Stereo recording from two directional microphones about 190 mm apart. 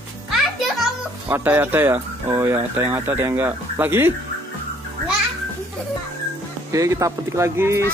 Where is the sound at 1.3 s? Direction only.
10° right (ahead or behind).